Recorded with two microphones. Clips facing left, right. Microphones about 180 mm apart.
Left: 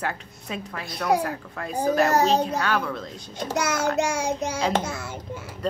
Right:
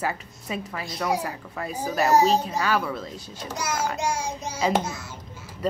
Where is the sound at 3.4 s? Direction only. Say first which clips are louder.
Left 4 dB; 70° left (ahead or behind).